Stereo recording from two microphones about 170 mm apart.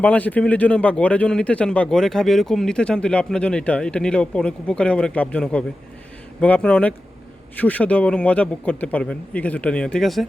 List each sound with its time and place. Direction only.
0.0 s speech: 10° left (ahead or behind)